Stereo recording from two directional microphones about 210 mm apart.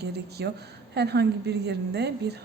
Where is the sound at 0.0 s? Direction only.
50° right (ahead or behind).